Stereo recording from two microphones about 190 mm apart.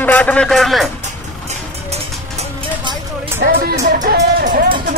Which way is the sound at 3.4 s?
55° right (ahead or behind).